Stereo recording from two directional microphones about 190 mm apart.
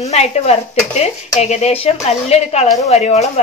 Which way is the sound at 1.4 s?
35° left (ahead or behind).